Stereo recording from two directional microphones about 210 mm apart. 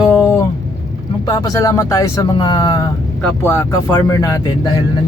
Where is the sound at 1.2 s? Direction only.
20° left (ahead or behind).